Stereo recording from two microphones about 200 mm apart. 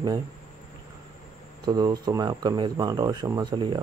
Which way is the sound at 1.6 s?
20° right (ahead or behind).